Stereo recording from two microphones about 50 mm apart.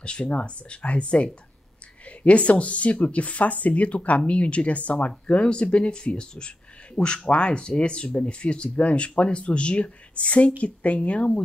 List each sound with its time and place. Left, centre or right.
0.0 s speech: left